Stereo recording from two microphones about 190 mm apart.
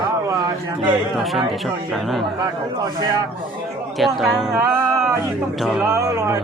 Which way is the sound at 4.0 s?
Centre (ahead or behind).